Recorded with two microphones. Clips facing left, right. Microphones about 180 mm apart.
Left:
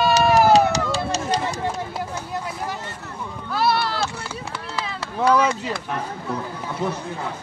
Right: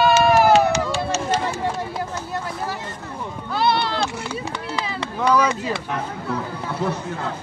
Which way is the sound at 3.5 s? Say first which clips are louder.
Right 1 dB; 5° left (ahead or behind).